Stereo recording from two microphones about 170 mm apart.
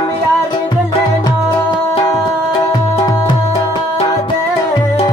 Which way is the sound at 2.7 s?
25° left (ahead or behind).